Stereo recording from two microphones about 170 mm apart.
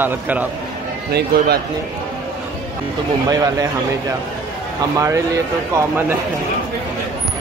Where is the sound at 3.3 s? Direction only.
20° right (ahead or behind).